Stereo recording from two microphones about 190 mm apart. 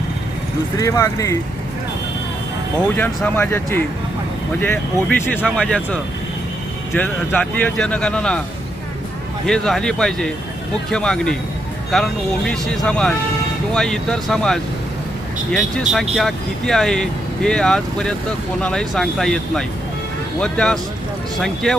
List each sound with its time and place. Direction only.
0.8 s speech: 15° left (ahead or behind)
2.9 s speech: 10° left (ahead or behind)
9.5 s speech: 5° left (ahead or behind)